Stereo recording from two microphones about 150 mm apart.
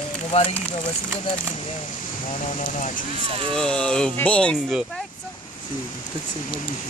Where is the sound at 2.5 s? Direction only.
55° left (ahead or behind).